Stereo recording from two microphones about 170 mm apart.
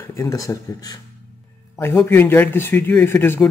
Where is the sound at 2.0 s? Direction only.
15° left (ahead or behind).